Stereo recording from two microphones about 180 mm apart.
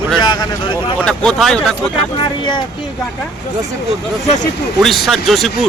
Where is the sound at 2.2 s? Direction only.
25° left (ahead or behind).